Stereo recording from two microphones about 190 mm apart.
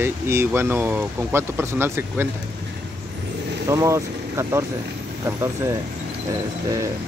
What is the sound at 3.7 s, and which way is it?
Speech, 15° right (ahead or behind).